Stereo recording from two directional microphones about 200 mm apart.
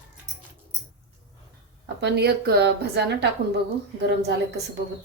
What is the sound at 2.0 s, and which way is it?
Speech, 55° right (ahead or behind).